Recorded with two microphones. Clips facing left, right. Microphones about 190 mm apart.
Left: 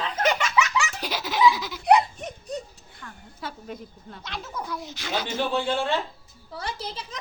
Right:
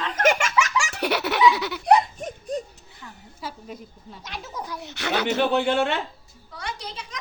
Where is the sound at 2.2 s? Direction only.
50° right (ahead or behind).